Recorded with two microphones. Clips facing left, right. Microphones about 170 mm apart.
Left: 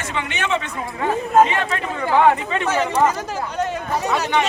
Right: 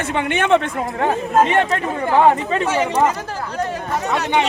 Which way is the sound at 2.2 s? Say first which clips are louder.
Right 2 dB; 30° right (ahead or behind).